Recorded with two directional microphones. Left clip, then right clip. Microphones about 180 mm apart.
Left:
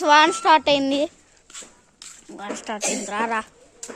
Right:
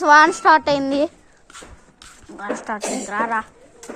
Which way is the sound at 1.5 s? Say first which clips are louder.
Right 1 dB; 55° right (ahead or behind).